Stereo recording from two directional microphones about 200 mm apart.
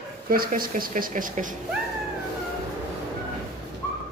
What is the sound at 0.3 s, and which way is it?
Speech, 45° right (ahead or behind).